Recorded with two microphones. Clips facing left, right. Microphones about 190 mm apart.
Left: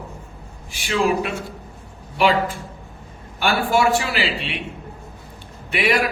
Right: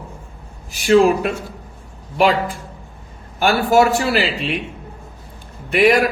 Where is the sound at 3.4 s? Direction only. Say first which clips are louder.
Right 5 dB; 40° right (ahead or behind).